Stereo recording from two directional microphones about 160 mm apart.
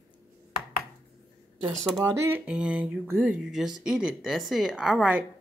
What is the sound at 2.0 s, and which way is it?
A woman's voice, 15° right (ahead or behind).